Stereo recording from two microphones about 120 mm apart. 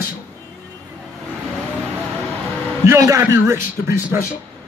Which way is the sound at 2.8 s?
25° right (ahead or behind).